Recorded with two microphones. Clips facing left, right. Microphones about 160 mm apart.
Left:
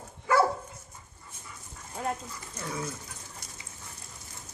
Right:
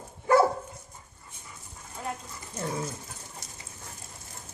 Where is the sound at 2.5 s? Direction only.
30° right (ahead or behind).